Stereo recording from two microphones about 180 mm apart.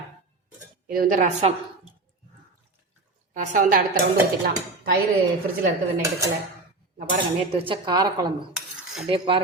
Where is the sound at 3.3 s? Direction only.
45° right (ahead or behind).